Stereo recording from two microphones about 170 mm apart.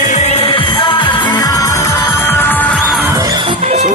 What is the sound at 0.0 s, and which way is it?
Music, 45° left (ahead or behind).